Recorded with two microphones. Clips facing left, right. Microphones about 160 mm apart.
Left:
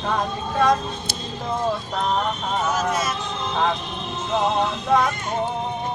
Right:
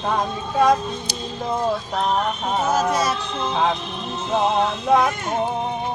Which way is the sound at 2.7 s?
35° right (ahead or behind).